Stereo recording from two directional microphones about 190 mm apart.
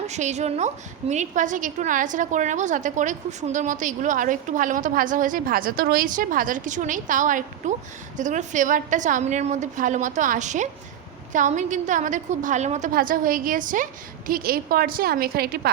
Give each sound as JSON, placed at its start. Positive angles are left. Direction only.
{"t": 0.1, "sound": "a woman's voice", "side_deg": -35}